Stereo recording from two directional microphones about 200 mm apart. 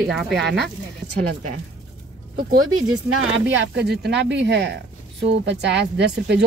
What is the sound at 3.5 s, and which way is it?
Speech, 55° right (ahead or behind).